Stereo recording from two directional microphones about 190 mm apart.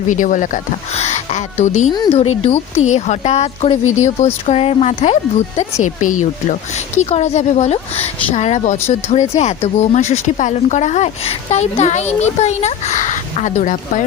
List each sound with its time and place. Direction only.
0.1 s speech: 40° left (ahead or behind)